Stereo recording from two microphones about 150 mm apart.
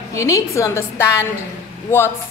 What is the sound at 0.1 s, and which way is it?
A woman's voice, 20° left (ahead or behind).